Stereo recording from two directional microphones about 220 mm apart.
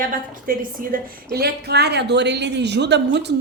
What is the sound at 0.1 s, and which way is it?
A woman's voice, 40° right (ahead or behind).